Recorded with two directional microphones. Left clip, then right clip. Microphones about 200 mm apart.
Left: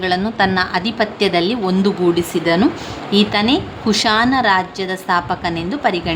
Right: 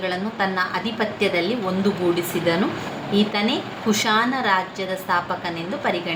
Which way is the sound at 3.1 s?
45° left (ahead or behind).